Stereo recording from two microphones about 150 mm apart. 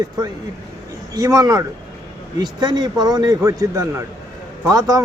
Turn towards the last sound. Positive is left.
turn(degrees=-20)  # may be behind; listen again after turning